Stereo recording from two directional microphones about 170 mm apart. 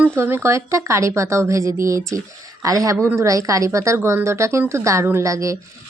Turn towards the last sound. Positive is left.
turn(degrees=-20)  # may be behind; listen again after turning